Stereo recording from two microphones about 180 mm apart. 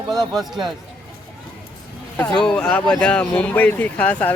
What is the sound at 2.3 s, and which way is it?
Speech, 5° left (ahead or behind).